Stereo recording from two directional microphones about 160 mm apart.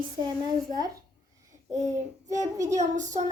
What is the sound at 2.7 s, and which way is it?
Speech, 50° right (ahead or behind).